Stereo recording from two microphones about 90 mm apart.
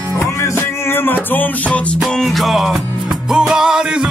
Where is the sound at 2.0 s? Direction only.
Centre (ahead or behind).